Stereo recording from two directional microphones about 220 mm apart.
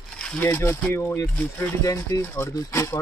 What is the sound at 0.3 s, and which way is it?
Speech, 10° left (ahead or behind).